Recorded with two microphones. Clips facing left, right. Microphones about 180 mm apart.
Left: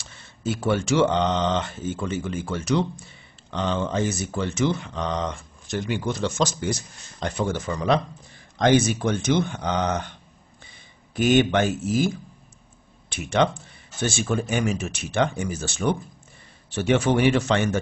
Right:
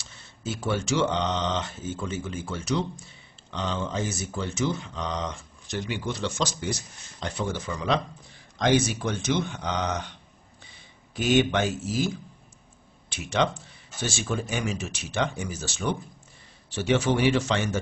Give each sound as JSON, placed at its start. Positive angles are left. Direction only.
{"t": 0.0, "sound": "speech", "side_deg": 55}
{"t": 11.1, "sound": "speech", "side_deg": 50}
{"t": 13.1, "sound": "speech", "side_deg": 55}